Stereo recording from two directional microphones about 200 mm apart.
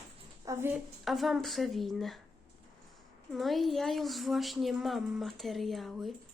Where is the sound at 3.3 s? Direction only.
Centre (ahead or behind).